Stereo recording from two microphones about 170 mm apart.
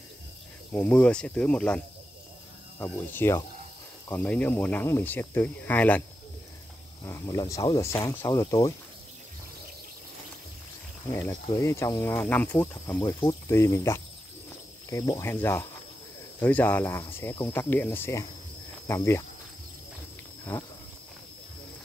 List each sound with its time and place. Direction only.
0.7 s speech: 5° left (ahead or behind)
2.8 s speech: 15° left (ahead or behind)
7.1 s speech: 15° left (ahead or behind)
11.1 s speech: 15° left (ahead or behind)
13.0 s speech: 30° left (ahead or behind)
13.5 s speech: 15° left (ahead or behind)